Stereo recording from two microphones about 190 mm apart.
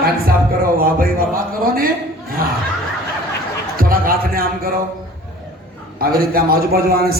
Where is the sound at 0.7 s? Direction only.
50° right (ahead or behind).